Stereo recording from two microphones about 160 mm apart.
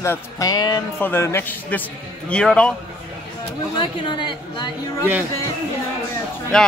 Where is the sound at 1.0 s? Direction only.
15° left (ahead or behind).